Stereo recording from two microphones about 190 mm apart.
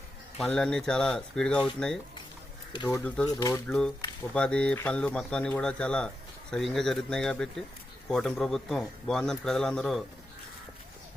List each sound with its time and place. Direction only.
0.3 s a man's voice: 5° left (ahead or behind)
2.7 s a man's voice: 20° left (ahead or behind); by 10.0 s 5° left (ahead or behind)